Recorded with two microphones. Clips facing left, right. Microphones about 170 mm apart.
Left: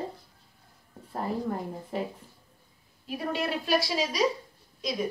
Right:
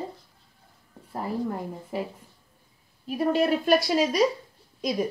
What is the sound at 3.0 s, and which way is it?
A woman's voice, 45° right (ahead or behind).